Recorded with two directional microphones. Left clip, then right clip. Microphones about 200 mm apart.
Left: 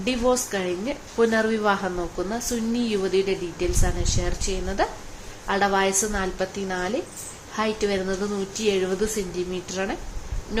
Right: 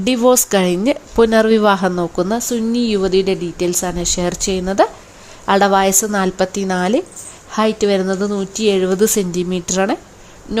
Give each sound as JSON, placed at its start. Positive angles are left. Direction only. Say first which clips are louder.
{"t": 0.0, "sound": "a woman's voice", "louder": "right 9 dB", "side_deg": -50}